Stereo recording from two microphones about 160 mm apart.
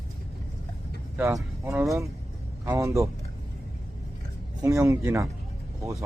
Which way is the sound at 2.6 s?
20° right (ahead or behind).